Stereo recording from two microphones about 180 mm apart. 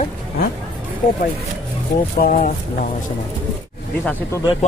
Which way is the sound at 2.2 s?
50° left (ahead or behind).